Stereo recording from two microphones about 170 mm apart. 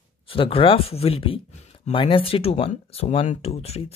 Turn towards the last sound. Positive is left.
turn(degrees=35)  # may be behind; listen again after turning